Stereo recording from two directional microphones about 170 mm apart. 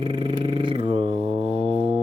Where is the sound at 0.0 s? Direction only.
30° right (ahead or behind).